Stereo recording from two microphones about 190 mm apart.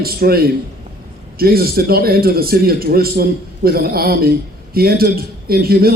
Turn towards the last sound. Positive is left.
turn(degrees=-55)  # may be behind; listen again after turning